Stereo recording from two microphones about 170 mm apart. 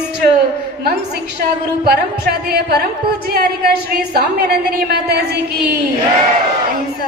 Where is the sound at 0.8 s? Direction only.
65° right (ahead or behind).